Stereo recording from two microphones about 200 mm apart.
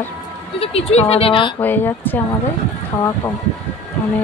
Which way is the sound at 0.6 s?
30° left (ahead or behind).